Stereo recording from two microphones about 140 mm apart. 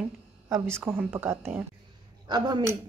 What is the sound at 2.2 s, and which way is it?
Speech, 30° right (ahead or behind).